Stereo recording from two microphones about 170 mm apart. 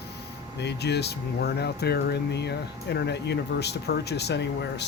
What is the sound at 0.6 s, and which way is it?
Speech, 80° left.